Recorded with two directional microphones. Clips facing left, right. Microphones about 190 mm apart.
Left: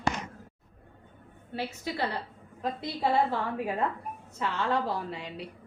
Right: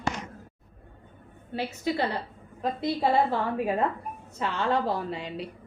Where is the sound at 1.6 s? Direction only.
20° right (ahead or behind).